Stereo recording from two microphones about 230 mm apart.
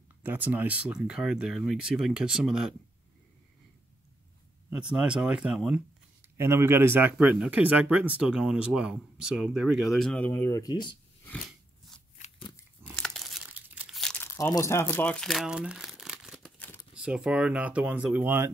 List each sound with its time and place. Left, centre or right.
0.2 s speech: centre
4.6 s speech: centre
12.2 s scissors: left
12.9 s crumpling: centre
16.9 s speech: centre